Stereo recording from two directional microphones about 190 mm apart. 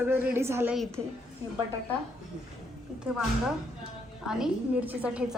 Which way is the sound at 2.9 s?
5° right (ahead or behind).